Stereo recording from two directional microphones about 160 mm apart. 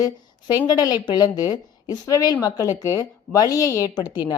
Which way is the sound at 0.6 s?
25° left (ahead or behind).